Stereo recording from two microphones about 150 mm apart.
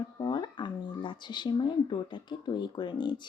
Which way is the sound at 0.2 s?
30° left (ahead or behind).